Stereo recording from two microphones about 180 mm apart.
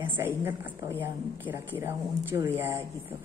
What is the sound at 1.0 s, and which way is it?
A woman's voice, 10° right (ahead or behind).